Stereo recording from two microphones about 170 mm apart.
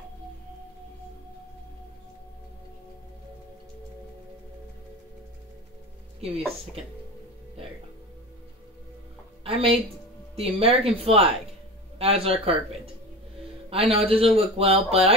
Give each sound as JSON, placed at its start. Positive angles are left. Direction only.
{"t": 6.2, "sound": "speech", "side_deg": -35}
{"t": 9.4, "sound": "speech", "side_deg": -35}
{"t": 13.7, "sound": "speech", "side_deg": -35}